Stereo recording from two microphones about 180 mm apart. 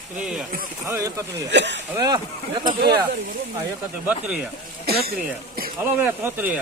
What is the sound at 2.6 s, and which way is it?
Speech, 50° right (ahead or behind).